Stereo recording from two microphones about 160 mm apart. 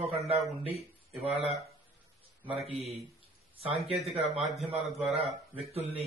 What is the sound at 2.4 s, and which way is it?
Speech, centre (ahead or behind).